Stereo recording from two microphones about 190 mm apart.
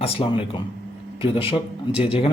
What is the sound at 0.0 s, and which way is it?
Speech, 25° left (ahead or behind).